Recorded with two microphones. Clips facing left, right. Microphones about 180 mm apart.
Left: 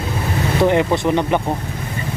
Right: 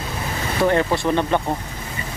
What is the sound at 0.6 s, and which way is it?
Speech, 15° left (ahead or behind).